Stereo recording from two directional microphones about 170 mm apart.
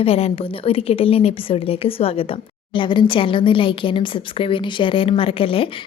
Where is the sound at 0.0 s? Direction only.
35° left (ahead or behind).